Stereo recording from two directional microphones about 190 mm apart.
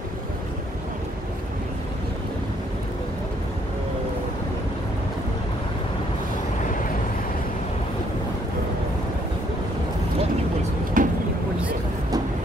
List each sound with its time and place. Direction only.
11.0 s vehicle: 45° right (ahead or behind)